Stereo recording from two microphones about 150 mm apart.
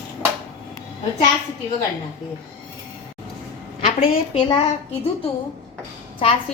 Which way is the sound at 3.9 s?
40° left (ahead or behind).